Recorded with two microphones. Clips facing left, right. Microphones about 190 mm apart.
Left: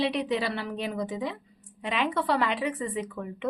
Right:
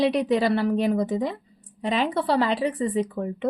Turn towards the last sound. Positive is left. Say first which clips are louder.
# right 7 dB
turn(degrees=-40)  # may be behind; listen again after turning